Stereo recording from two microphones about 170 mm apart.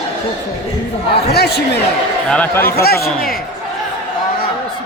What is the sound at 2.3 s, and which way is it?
Speech, 10° left (ahead or behind).